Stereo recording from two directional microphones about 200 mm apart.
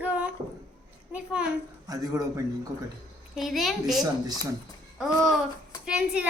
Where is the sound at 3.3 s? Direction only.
Centre (ahead or behind).